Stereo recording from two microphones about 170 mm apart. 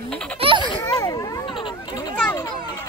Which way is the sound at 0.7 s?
25° left (ahead or behind).